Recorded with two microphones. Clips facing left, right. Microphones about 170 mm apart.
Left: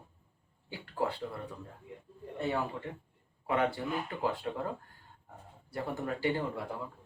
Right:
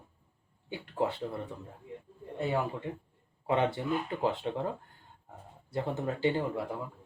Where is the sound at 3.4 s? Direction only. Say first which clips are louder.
Right 2 dB; 25° right (ahead or behind).